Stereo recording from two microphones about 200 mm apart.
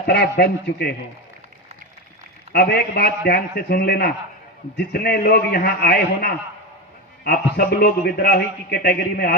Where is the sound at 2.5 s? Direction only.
55° left (ahead or behind).